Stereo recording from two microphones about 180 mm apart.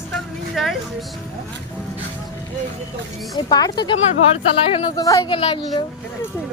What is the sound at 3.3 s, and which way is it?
Speech, 20° left (ahead or behind).